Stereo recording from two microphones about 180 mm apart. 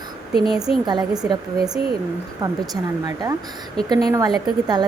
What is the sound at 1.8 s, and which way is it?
Speech, 30° left (ahead or behind).